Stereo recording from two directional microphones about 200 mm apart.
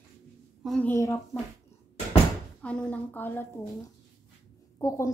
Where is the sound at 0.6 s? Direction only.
5° left (ahead or behind).